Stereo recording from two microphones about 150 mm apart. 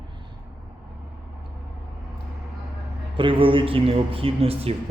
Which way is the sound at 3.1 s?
35° right (ahead or behind).